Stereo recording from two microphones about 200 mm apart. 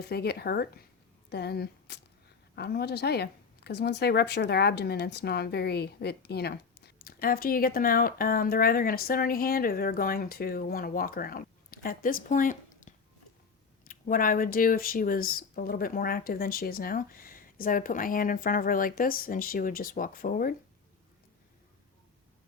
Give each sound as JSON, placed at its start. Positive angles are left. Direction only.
{"t": 0.0, "sound": "speech", "side_deg": 55}